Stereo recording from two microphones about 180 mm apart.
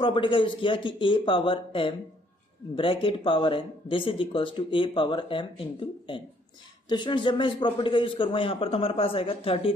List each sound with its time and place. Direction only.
0.0 s a man's voice: 30° left (ahead or behind)